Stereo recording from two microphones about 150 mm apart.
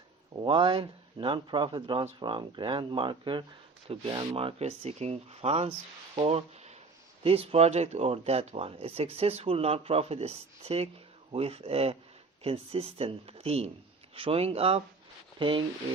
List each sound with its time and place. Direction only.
0.4 s speech: 35° right (ahead or behind)